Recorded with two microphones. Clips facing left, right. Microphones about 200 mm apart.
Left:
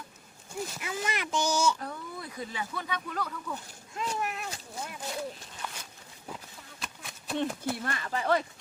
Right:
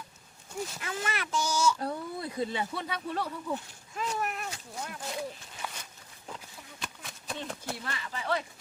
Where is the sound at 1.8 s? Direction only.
30° right (ahead or behind).